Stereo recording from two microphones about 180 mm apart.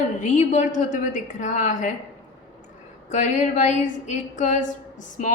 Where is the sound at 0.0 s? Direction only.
40° left (ahead or behind).